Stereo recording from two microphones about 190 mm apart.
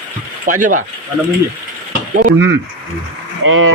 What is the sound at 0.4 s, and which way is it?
Speech, 45° right (ahead or behind).